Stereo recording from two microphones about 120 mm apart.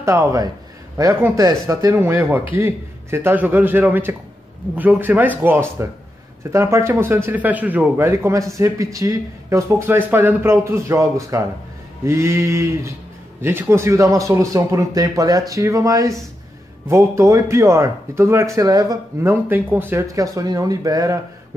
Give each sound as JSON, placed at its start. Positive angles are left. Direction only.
{"t": 0.0, "sound": "a man's voice", "side_deg": -25}